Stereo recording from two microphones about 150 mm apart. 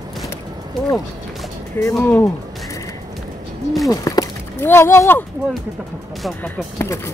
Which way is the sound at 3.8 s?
20° left (ahead or behind).